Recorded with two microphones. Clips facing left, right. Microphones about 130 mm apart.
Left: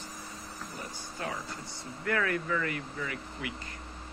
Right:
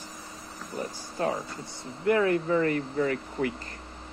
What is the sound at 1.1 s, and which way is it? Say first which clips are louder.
Speech: right 8 dB; 35° right (ahead or behind).